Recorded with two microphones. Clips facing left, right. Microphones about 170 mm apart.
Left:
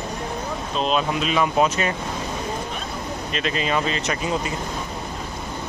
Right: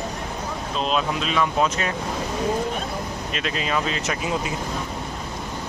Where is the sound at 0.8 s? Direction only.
Centre (ahead or behind).